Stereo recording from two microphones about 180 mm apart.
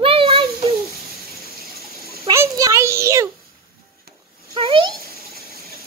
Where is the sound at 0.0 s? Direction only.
30° right (ahead or behind).